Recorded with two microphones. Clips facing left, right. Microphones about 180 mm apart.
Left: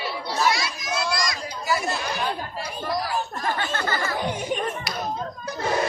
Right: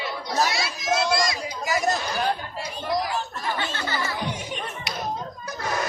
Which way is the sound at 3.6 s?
50° left (ahead or behind).